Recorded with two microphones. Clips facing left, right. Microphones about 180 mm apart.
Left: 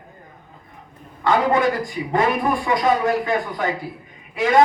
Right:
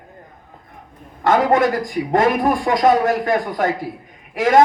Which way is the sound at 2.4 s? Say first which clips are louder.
Right 4 dB; 45° right (ahead or behind).